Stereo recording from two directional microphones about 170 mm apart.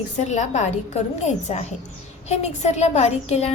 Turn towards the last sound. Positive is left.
turn(degrees=40)  # may be behind; listen again after turning